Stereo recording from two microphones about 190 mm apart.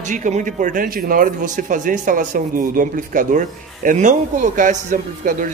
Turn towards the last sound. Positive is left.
turn(degrees=-40)  # may be behind; listen again after turning